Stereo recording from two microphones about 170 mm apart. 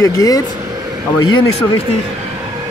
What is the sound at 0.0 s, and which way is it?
Speech, 20° left (ahead or behind).